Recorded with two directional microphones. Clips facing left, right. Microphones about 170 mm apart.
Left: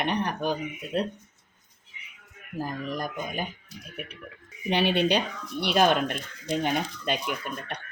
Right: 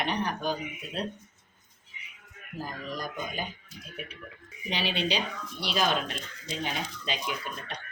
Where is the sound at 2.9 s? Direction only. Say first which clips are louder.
Left 3 dB; 60° left (ahead or behind).